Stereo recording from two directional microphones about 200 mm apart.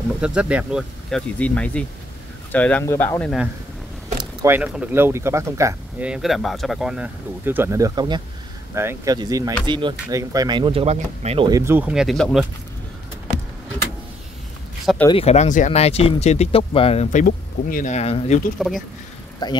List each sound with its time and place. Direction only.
0.2 s speech: 5° right (ahead or behind)
4.2 s vehicle: 20° right (ahead or behind)
4.6 s speech: 5° right (ahead or behind)
15.0 s speech: 30° left (ahead or behind)
19.4 s speech: 20° left (ahead or behind)